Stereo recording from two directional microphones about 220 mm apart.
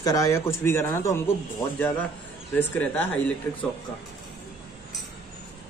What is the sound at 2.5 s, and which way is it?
Speech, 5° left (ahead or behind).